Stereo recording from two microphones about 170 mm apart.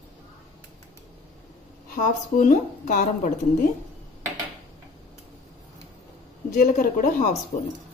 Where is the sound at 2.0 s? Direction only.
50° left (ahead or behind).